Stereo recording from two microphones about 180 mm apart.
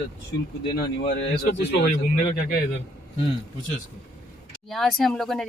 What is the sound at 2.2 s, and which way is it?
Speech, 45° left (ahead or behind).